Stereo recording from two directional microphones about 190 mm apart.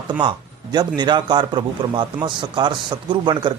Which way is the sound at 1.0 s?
25° right (ahead or behind).